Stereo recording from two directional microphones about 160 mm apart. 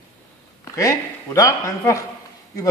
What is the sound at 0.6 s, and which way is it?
A man's voice, 20° left (ahead or behind).